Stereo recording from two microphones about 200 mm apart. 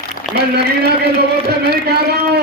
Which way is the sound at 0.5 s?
55° right (ahead or behind).